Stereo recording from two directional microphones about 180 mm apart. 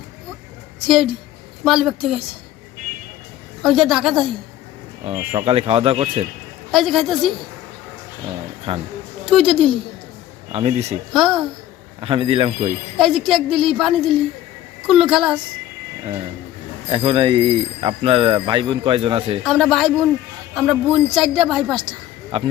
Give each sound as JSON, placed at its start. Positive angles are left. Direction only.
{"t": 1.6, "sound": "a woman's voice", "side_deg": 0}
{"t": 3.6, "sound": "a woman's voice", "side_deg": 0}
{"t": 5.3, "sound": "speech", "side_deg": -30}
{"t": 6.7, "sound": "a woman's voice", "side_deg": 0}
{"t": 8.7, "sound": "speech", "side_deg": -30}
{"t": 9.3, "sound": "a woman's voice", "side_deg": -5}
{"t": 10.5, "sound": "speech", "side_deg": -35}
{"t": 11.1, "sound": "a woman's voice", "side_deg": 0}
{"t": 11.9, "sound": "speech", "side_deg": -30}
{"t": 13.0, "sound": "a woman's voice", "side_deg": 0}
{"t": 16.9, "sound": "speech", "side_deg": -30}
{"t": 19.4, "sound": "a woman's voice", "side_deg": 0}
{"t": 21.8, "sound": "a sound", "side_deg": -30}